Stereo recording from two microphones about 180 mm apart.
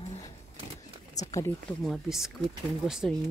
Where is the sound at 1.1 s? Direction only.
20° left (ahead or behind).